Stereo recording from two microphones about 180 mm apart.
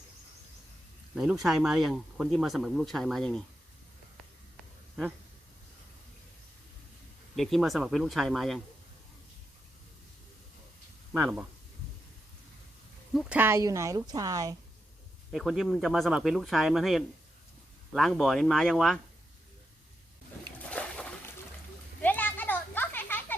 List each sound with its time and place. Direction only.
1.1 s speech: 5° right (ahead or behind)
4.5 s a sound: centre (ahead or behind)
7.3 s speech: centre (ahead or behind)
11.1 s speech: 10° right (ahead or behind)
13.1 s speech: 5° right (ahead or behind)
15.3 s speech: centre (ahead or behind)
20.7 s a sound: 5° left (ahead or behind)
22.0 s children playing: 10° left (ahead or behind)